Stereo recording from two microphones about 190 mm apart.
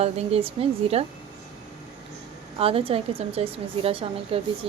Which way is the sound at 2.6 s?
30° right (ahead or behind).